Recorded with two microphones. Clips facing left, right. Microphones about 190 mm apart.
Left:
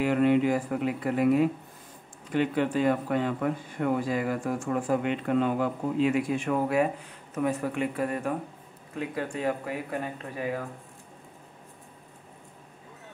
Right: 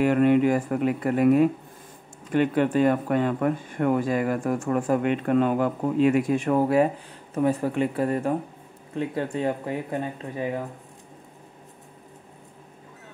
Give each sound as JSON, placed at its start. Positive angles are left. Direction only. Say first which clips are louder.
{"t": 0.0, "sound": "speech", "louder": "right 4 dB", "side_deg": -50}